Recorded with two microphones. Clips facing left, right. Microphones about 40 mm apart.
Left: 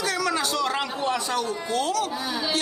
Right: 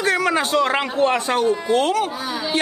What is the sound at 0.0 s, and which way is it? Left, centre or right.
A man's voice, right.